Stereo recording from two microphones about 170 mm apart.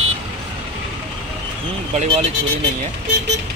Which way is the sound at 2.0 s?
40° right (ahead or behind).